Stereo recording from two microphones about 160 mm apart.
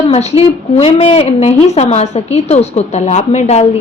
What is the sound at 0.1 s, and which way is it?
A woman's voice, 40° left (ahead or behind).